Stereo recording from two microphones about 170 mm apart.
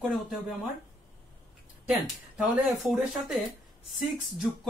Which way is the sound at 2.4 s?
5° right (ahead or behind).